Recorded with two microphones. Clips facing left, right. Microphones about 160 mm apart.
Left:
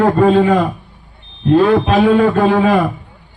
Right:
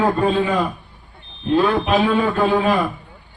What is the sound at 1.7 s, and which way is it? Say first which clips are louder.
A man's voice: left 6 dB; 55° left (ahead or behind).